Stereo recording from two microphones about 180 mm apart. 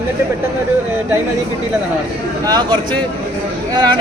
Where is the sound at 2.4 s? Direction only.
20° right (ahead or behind).